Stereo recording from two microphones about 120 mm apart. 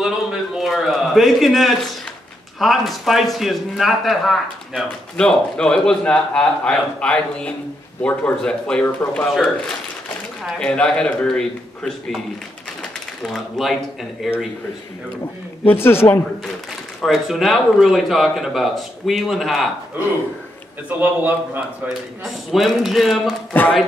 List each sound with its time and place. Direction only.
0.6 s a sound: centre (ahead or behind)
2.6 s speech: centre (ahead or behind)
10.4 s speech: 5° left (ahead or behind)
13.2 s speech: centre (ahead or behind)
15.6 s speech: 20° left (ahead or behind)
17.0 s speech: centre (ahead or behind)
21.0 s a man's voice: 15° right (ahead or behind)
21.8 s speech: centre (ahead or behind)
23.5 s speech: 15° left (ahead or behind)